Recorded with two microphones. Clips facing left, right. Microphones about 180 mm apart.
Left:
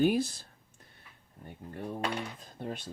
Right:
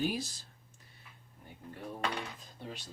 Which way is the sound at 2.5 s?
55° left (ahead or behind).